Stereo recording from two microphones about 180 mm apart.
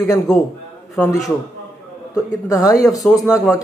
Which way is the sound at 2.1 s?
20° left (ahead or behind).